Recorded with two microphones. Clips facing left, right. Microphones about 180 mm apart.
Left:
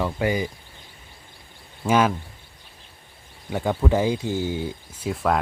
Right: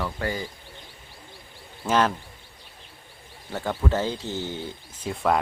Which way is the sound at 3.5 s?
15° left (ahead or behind).